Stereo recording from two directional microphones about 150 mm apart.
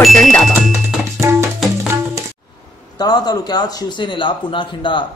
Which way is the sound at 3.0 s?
25° left (ahead or behind).